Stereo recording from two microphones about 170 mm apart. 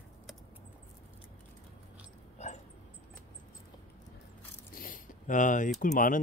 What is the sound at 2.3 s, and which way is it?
Dog, 40° left (ahead or behind).